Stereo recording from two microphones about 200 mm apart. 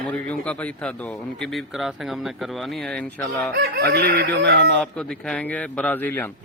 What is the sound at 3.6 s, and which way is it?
Speech, 55° right (ahead or behind).